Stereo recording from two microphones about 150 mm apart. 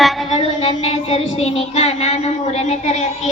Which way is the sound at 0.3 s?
40° left (ahead or behind).